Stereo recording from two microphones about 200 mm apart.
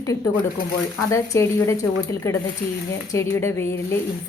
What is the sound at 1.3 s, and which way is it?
Speech, 15° left (ahead or behind).